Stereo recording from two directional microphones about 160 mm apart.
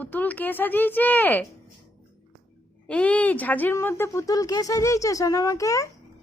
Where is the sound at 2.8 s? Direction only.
10° left (ahead or behind).